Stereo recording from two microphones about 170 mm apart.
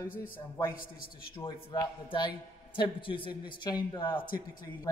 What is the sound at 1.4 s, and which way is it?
A man's voice, 25° left (ahead or behind).